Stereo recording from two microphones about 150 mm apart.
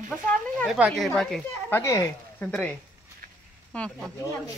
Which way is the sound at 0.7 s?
5° right (ahead or behind).